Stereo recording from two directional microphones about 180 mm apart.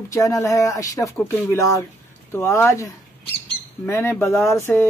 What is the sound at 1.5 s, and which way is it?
Speech, 15° left (ahead or behind).